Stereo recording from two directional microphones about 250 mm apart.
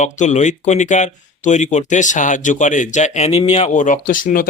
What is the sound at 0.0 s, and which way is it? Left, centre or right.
Speech, left.